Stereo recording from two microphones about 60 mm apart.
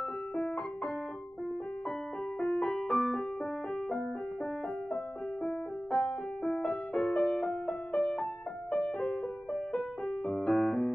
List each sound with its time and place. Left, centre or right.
2.4 s music: centre
2.7 s music: centre
5.4 s music: centre